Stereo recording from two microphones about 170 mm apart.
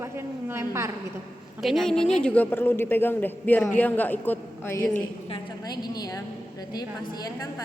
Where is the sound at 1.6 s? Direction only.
Centre (ahead or behind).